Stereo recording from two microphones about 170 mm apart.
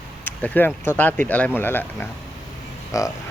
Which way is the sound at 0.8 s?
10° left (ahead or behind).